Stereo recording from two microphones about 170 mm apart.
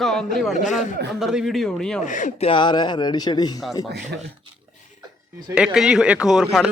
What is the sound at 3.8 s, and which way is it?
Speech, 80° right.